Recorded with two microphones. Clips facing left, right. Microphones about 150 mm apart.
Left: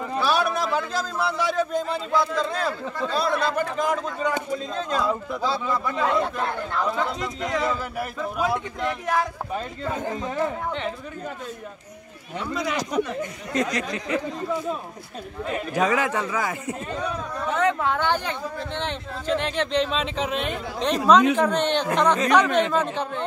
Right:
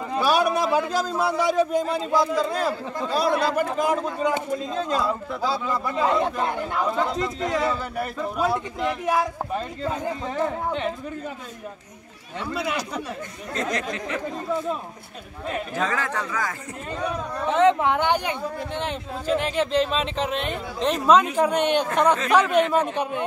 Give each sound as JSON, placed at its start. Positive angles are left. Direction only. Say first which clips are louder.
{"t": 0.1, "sound": "a man's voice", "louder": "right 3 dB", "side_deg": -15}
{"t": 6.9, "sound": "speech", "louder": "right 2 dB", "side_deg": 0}
{"t": 10.4, "sound": "speech", "louder": "right 3 dB", "side_deg": -5}
{"t": 12.9, "sound": "speech", "louder": "left 6 dB", "side_deg": 15}
{"t": 15.7, "sound": "speech", "louder": "left 6 dB", "side_deg": 15}
{"t": 17.5, "sound": "a man's voice", "louder": "right 4 dB", "side_deg": -20}